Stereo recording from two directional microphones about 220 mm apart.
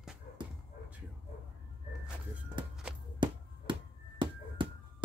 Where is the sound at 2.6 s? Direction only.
20° right (ahead or behind).